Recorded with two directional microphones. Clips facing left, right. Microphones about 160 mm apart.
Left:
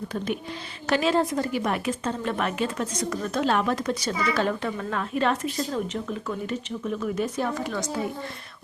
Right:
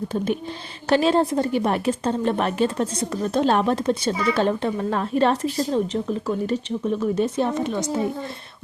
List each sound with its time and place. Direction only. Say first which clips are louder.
0.9 s a woman's voice: right 4 dB; 30° right (ahead or behind)